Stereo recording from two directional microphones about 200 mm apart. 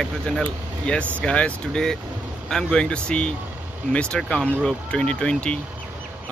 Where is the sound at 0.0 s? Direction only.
5° left (ahead or behind).